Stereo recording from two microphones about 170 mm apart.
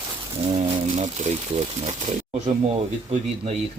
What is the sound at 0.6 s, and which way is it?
Speech, 40° right (ahead or behind).